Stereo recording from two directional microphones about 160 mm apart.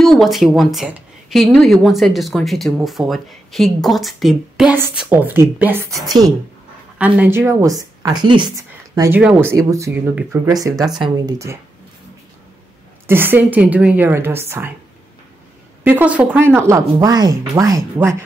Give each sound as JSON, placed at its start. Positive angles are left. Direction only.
{"t": 0.0, "sound": "a woman's voice", "side_deg": 0}
{"t": 7.0, "sound": "a woman's voice", "side_deg": -10}
{"t": 13.0, "sound": "a woman's voice", "side_deg": -15}
{"t": 15.8, "sound": "a woman's voice", "side_deg": -10}